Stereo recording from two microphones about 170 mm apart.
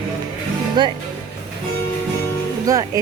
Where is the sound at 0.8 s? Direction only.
25° right (ahead or behind).